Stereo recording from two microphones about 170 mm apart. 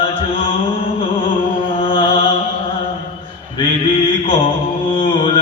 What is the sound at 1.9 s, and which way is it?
Mantra, 30° left (ahead or behind).